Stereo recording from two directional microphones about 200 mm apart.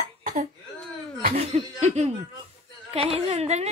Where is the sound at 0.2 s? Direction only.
45° right (ahead or behind).